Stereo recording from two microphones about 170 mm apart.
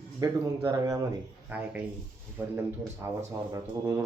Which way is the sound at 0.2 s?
20° right (ahead or behind).